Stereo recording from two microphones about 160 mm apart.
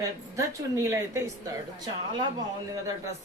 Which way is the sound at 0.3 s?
20° right (ahead or behind).